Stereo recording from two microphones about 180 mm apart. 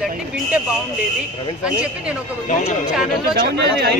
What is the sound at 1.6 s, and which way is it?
Speech, 5° right (ahead or behind).